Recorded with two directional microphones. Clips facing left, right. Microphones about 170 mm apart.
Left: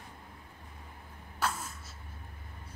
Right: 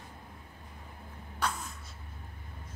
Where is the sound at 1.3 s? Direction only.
5° left (ahead or behind).